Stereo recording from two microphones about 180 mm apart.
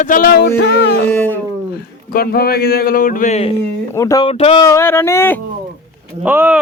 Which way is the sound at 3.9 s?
20° left (ahead or behind).